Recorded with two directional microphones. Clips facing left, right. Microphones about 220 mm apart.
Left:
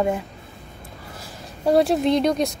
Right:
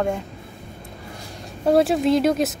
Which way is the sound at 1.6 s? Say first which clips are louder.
Even; centre (ahead or behind).